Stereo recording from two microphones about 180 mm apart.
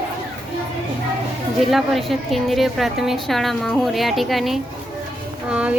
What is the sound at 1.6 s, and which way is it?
Speech, centre (ahead or behind).